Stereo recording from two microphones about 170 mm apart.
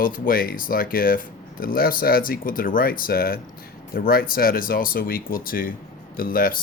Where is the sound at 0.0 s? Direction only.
55° left (ahead or behind).